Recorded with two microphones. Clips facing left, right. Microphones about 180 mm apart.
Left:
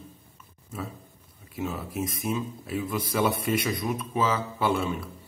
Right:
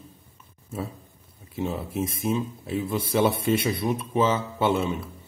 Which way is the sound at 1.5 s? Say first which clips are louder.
Right 3 dB; 25° right (ahead or behind).